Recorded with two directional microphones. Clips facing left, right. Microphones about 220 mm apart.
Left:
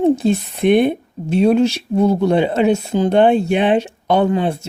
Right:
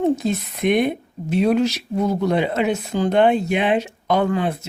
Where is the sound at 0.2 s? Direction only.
30° left (ahead or behind).